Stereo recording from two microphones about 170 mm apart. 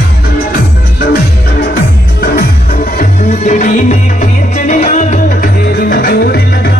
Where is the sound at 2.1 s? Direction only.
65° left (ahead or behind).